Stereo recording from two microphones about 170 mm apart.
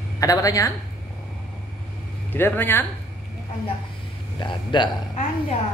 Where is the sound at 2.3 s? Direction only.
10° left (ahead or behind).